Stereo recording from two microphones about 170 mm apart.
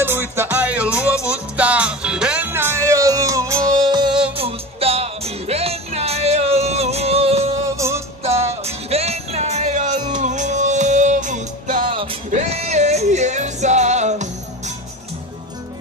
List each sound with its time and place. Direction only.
0.0 s music: 15° right (ahead or behind); by 7.4 s 35° right (ahead or behind)
7.7 s music: 15° right (ahead or behind)
8.2 s music: 40° right (ahead or behind)